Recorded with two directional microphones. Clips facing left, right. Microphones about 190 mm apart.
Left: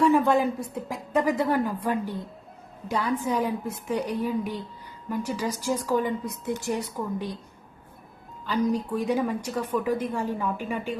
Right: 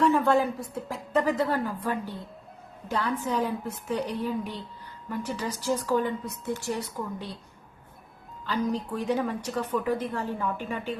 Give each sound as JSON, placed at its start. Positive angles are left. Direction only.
{"t": 0.0, "sound": "a woman's voice", "side_deg": 15}
{"t": 8.4, "sound": "a woman's voice", "side_deg": 10}